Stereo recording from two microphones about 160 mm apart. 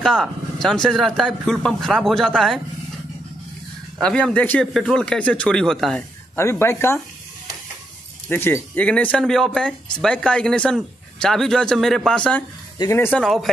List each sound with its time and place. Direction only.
0.0 s a man's voice: 5° left (ahead or behind)
4.0 s a man's voice: 5° left (ahead or behind)
6.3 s speech: 15° left (ahead or behind)
8.3 s a man's voice: 15° left (ahead or behind)
12.7 s speech: 20° left (ahead or behind)
13.2 s a man's voice: centre (ahead or behind)